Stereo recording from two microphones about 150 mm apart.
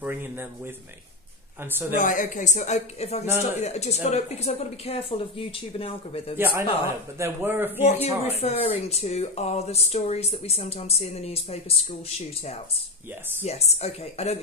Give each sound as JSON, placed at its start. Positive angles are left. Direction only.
{"t": 0.0, "sound": "a sound", "side_deg": -10}
{"t": 1.6, "sound": "a man's voice", "side_deg": -15}
{"t": 2.0, "sound": "speech", "side_deg": 60}
{"t": 6.3, "sound": "a man's voice", "side_deg": -15}
{"t": 7.8, "sound": "speech", "side_deg": 45}